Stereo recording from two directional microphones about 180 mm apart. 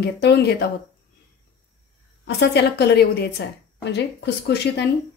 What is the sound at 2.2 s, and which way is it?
A woman's voice, 70° left (ahead or behind).